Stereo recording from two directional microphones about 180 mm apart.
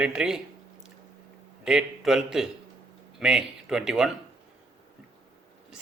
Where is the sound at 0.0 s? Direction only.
5° right (ahead or behind).